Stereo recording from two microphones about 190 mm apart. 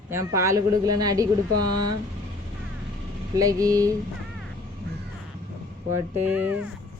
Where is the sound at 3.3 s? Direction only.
20° right (ahead or behind).